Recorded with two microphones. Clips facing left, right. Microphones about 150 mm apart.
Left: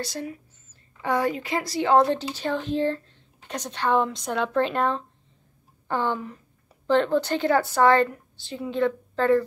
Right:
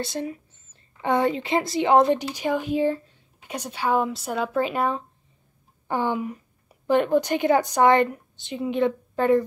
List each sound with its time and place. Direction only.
0.0 s a woman's voice: 25° right (ahead or behind)